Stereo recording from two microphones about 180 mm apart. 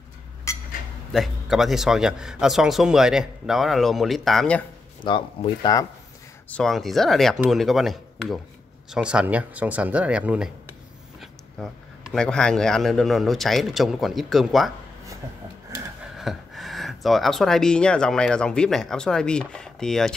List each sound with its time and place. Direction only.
1.1 s a man's voice: centre (ahead or behind)
5.0 s speech: 25° left (ahead or behind)
6.5 s a man's voice: centre (ahead or behind)
16.2 s speech: centre (ahead or behind)